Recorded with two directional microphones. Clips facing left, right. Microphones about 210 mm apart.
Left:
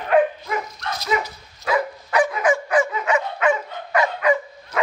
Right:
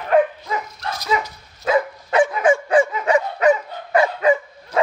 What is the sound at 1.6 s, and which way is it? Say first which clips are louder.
Dog: right 3 dB; 25° right (ahead or behind).